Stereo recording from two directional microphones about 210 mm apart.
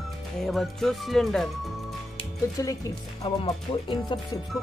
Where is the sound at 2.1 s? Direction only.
15° left (ahead or behind).